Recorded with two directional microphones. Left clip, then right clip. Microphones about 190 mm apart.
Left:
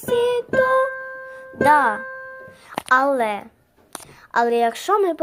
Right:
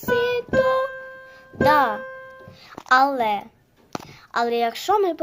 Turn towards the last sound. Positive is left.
turn(degrees=5)  # may be behind; listen again after turning